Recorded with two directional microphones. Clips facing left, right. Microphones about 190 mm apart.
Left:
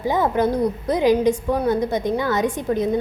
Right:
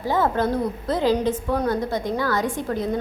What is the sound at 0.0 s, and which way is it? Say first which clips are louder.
A woman's voice: left 2 dB; 15° left (ahead or behind).